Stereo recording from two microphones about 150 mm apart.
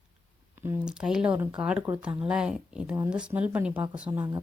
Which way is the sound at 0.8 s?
5° right (ahead or behind).